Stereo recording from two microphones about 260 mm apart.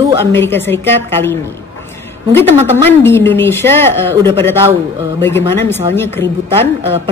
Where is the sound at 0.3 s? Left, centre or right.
Centre.